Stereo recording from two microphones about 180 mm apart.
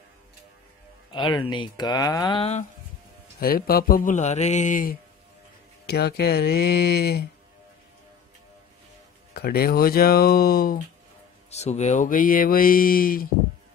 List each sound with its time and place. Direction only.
1.1 s speech: 25° left (ahead or behind)
3.3 s speech: 55° left (ahead or behind)
5.9 s speech: 65° left (ahead or behind)
9.3 s speech: 60° left (ahead or behind)
11.5 s speech: 40° left (ahead or behind); by 13.3 s 55° left (ahead or behind)